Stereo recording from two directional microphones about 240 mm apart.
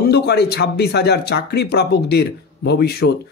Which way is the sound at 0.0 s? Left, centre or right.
Left.